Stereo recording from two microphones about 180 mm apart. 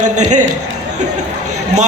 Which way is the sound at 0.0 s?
40° right (ahead or behind).